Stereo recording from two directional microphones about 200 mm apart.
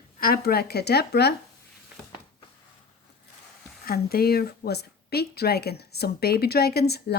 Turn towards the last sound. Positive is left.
turn(degrees=55)  # may be behind; listen again after turning